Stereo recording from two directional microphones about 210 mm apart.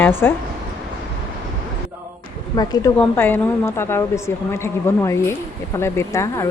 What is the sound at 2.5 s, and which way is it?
Speech, 20° left (ahead or behind).